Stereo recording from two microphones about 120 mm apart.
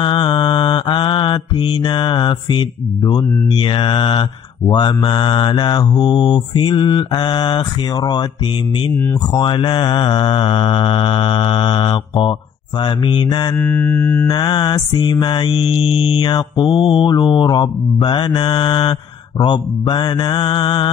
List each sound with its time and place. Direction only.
0.0 s mantra: 45° left (ahead or behind)
9.3 s mantra: 45° left (ahead or behind)
13.6 s mantra: 20° left (ahead or behind); by 20.9 s 40° left (ahead or behind)